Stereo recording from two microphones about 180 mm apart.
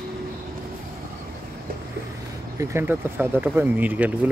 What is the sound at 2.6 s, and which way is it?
Speech, 15° right (ahead or behind).